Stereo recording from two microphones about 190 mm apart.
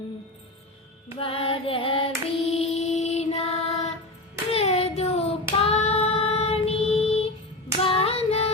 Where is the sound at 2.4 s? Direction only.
35° left (ahead or behind).